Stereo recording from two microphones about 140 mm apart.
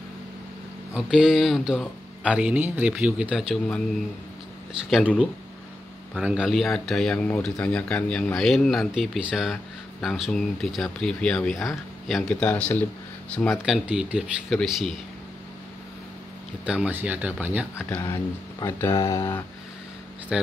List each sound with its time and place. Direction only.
0.9 s speech: 5° right (ahead or behind)
4.8 s speech: 5° right (ahead or behind)
6.1 s speech: 5° right (ahead or behind); by 12.8 s 10° left (ahead or behind)
13.7 s speech: 5° right (ahead or behind)
16.6 s speech: 10° right (ahead or behind)
17.7 s speech: 15° left (ahead or behind)